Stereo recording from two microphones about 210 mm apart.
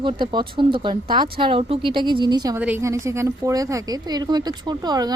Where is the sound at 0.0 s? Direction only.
25° right (ahead or behind).